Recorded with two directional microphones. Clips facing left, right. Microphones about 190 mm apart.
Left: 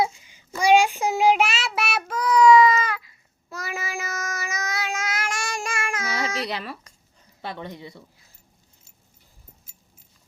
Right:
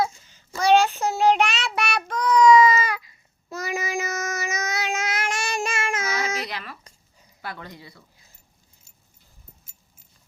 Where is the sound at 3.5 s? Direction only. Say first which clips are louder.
Right 4 dB; 20° right (ahead or behind).